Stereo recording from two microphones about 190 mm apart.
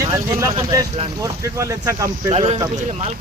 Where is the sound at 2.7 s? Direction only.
40° right (ahead or behind).